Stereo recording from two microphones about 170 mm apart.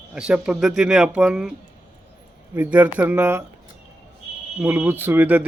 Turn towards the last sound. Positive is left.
turn(degrees=-10)  # may be behind; listen again after turning